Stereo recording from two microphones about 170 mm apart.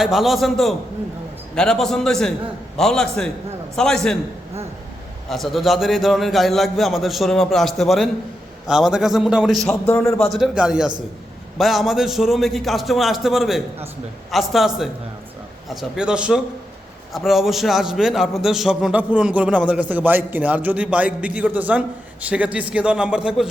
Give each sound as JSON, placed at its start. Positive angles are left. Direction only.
{"t": 0.0, "sound": "a man's voice", "side_deg": 0}
{"t": 5.3, "sound": "a man's voice", "side_deg": 0}
{"t": 9.8, "sound": "a man's voice", "side_deg": 15}
{"t": 10.2, "sound": "a man's voice", "side_deg": 0}
{"t": 15.7, "sound": "a man's voice", "side_deg": -5}